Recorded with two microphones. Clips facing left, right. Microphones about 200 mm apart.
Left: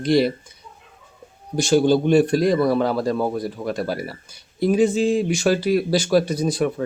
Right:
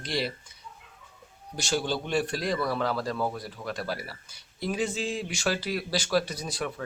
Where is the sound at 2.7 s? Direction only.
20° left (ahead or behind).